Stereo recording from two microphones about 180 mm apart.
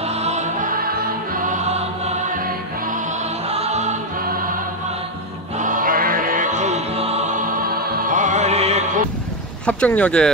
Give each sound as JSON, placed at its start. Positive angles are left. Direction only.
{"t": 0.0, "sound": "music", "side_deg": -35}
{"t": 3.4, "sound": "music", "side_deg": -35}
{"t": 5.6, "sound": "music", "side_deg": -50}
{"t": 9.7, "sound": "speech", "side_deg": 10}